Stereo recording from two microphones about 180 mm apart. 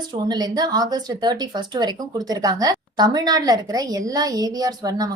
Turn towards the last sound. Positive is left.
turn(degrees=-20)  # may be behind; listen again after turning